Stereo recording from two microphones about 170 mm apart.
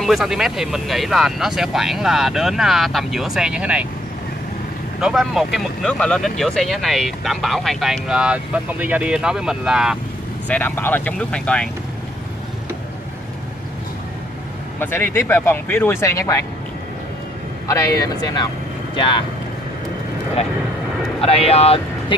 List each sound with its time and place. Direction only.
0.0 s speech: centre (ahead or behind)
5.0 s speech: centre (ahead or behind)
10.5 s speech: 10° left (ahead or behind)
14.8 s speech: 15° left (ahead or behind)
17.6 s speech: 20° left (ahead or behind)
21.2 s speech: 35° left (ahead or behind)